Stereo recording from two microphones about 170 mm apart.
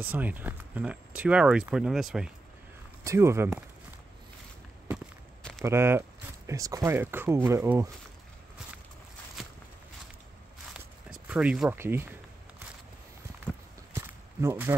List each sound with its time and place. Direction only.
0.0 s speech: 10° right (ahead or behind)
3.0 s speech: 15° right (ahead or behind)
5.4 s a sound: centre (ahead or behind)
5.7 s speech: 15° right (ahead or behind)
10.7 s walk: 5° right (ahead or behind)
11.7 s speech: 15° right (ahead or behind)
13.9 s walk: 15° right (ahead or behind)